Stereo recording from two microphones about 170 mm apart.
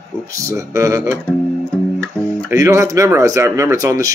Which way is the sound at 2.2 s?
20° right (ahead or behind).